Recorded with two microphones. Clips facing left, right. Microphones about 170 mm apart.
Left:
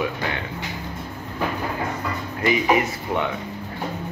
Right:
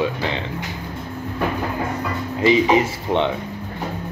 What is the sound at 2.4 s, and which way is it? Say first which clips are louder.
Speech: right 4 dB; 25° right (ahead or behind).